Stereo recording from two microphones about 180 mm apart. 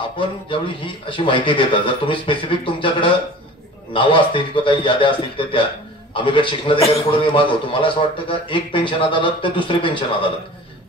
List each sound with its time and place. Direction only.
0.2 s a man's voice: 30° left (ahead or behind)